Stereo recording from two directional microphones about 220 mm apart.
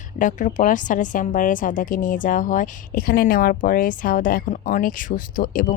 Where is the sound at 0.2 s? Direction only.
35° left (ahead or behind).